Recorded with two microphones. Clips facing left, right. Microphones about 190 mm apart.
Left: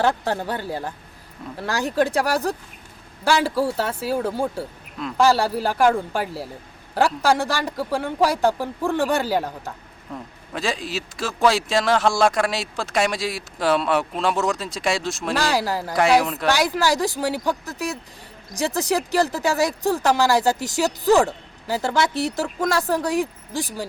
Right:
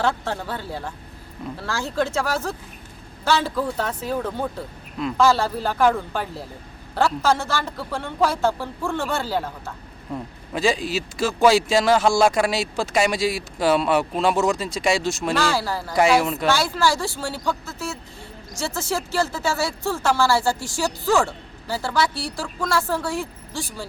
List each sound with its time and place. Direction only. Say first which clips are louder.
0.3 s speech: left 3 dB; 15° left (ahead or behind)
10.5 s speech: right 4 dB; centre (ahead or behind)
15.4 s speech: left 1 dB; 15° left (ahead or behind)
16.0 s speech: even; centre (ahead or behind)
16.5 s speech: left 2 dB; 15° left (ahead or behind)